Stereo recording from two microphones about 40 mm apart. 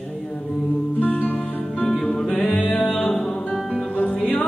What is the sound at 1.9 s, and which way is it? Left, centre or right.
Music, centre.